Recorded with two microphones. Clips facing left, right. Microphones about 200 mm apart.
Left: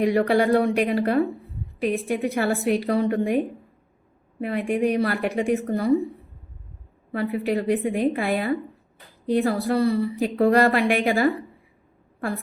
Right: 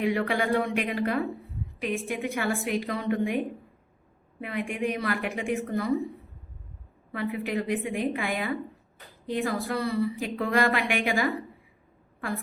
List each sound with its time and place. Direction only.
0.0 s a woman's voice: 40° left (ahead or behind)
4.4 s a woman's voice: 35° left (ahead or behind)
7.1 s a woman's voice: 35° left (ahead or behind)